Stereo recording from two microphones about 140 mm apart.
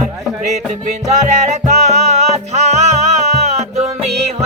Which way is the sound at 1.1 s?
55° right (ahead or behind).